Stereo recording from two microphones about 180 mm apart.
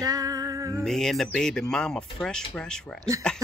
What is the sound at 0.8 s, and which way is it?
Speech, centre (ahead or behind).